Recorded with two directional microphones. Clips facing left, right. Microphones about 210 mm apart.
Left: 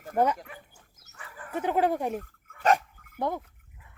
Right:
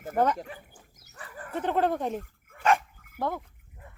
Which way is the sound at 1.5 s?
10° left (ahead or behind).